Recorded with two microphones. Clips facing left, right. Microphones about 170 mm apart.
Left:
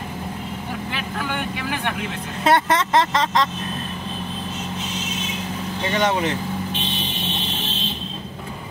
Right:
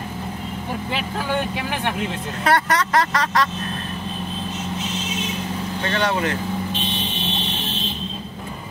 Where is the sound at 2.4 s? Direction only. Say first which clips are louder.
Left 1 dB; 25° left (ahead or behind).